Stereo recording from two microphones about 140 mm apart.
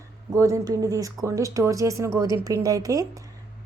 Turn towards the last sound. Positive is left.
turn(degrees=-25)  # may be behind; listen again after turning